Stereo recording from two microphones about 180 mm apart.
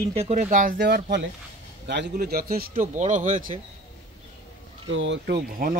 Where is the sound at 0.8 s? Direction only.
70° right (ahead or behind); by 3.6 s 45° right (ahead or behind).